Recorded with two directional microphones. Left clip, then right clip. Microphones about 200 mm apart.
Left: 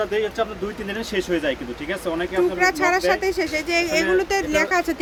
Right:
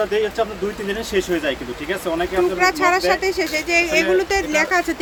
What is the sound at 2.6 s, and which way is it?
Speech, 5° left (ahead or behind).